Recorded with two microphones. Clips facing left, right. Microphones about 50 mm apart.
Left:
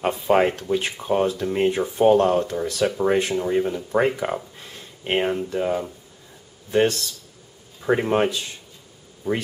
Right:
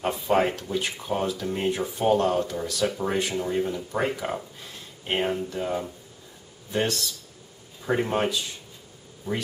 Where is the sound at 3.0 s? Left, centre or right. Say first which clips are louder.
Left 6 dB; left.